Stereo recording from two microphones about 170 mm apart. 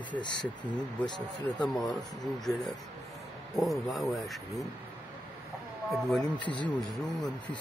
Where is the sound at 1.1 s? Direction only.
Centre (ahead or behind).